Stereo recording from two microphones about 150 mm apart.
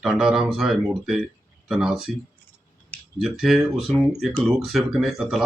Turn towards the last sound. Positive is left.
turn(degrees=-5)  # may be behind; listen again after turning